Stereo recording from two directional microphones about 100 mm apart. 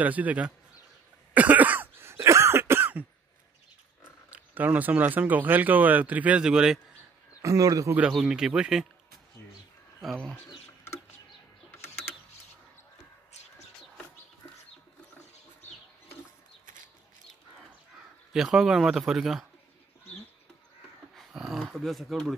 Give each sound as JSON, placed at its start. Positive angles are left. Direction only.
{"t": 0.0, "sound": "speech", "side_deg": -15}
{"t": 1.3, "sound": "throat clearing", "side_deg": -15}
{"t": 4.3, "sound": "speech", "side_deg": -15}
{"t": 7.4, "sound": "speech", "side_deg": -35}
{"t": 8.1, "sound": "speech", "side_deg": -5}
{"t": 18.3, "sound": "speech", "side_deg": -5}
{"t": 21.2, "sound": "speech", "side_deg": -5}